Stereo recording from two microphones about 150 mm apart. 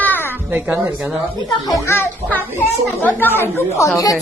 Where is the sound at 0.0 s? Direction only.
10° left (ahead or behind).